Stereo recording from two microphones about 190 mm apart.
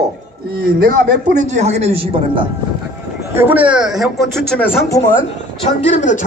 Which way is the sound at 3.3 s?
10° right (ahead or behind).